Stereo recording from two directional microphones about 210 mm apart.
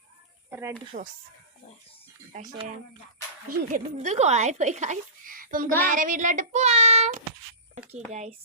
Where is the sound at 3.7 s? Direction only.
35° right (ahead or behind).